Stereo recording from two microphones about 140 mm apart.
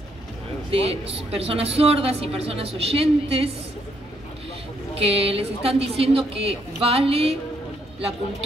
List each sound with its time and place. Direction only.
0.7 s a woman's voice: 45° right (ahead or behind)
4.9 s a woman's voice: 45° right (ahead or behind)